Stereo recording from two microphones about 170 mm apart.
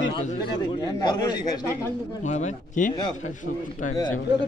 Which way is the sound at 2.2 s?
45° left (ahead or behind).